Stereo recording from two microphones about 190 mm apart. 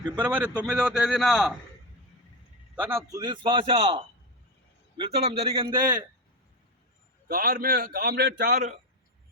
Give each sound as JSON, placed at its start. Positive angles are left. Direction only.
{"t": 0.2, "sound": "a man's voice", "side_deg": -10}
{"t": 2.7, "sound": "a man's voice", "side_deg": -10}
{"t": 7.3, "sound": "a man's voice", "side_deg": -50}